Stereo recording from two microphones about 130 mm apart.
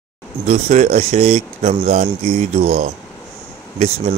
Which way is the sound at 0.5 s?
55° right (ahead or behind).